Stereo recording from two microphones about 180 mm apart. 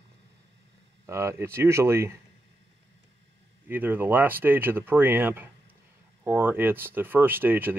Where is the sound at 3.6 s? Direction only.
10° right (ahead or behind).